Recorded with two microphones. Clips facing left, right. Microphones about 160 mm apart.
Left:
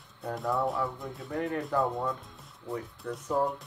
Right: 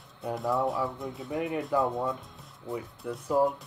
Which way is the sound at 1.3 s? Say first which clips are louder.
Right 1 dB; 10° right (ahead or behind).